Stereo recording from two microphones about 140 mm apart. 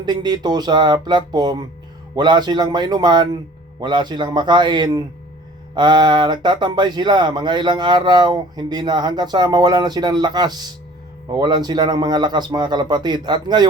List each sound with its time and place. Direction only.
0.0 s speech: 30° right (ahead or behind)